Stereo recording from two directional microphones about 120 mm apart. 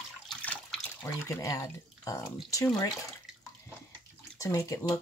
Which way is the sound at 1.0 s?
25° left (ahead or behind).